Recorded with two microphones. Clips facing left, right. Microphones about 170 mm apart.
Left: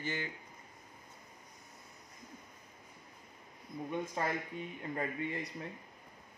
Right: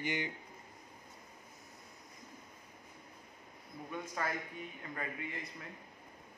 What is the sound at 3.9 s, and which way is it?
Speech, 25° left (ahead or behind).